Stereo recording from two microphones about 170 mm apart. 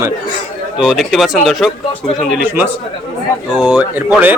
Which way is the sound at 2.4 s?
10° right (ahead or behind).